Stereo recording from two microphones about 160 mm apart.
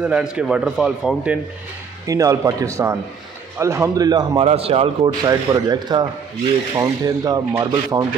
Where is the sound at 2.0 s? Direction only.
20° right (ahead or behind).